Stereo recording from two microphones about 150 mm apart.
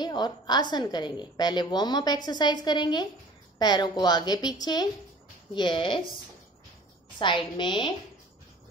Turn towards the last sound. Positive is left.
turn(degrees=30)  # may be behind; listen again after turning